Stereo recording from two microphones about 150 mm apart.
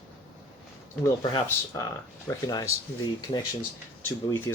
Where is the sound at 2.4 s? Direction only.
25° left (ahead or behind).